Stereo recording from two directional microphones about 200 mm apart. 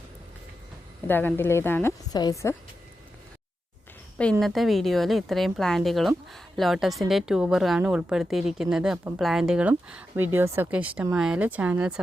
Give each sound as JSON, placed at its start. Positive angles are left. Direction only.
{"t": 1.0, "sound": "a woman's voice", "side_deg": 10}
{"t": 4.2, "sound": "a woman's voice", "side_deg": 5}